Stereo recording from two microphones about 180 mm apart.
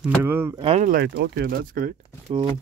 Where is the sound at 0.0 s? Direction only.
10° right (ahead or behind).